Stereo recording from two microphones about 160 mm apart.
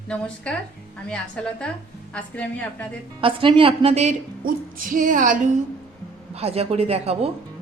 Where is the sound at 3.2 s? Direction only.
35° right (ahead or behind).